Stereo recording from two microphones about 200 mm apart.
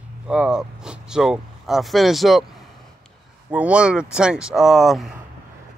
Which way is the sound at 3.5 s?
5° right (ahead or behind).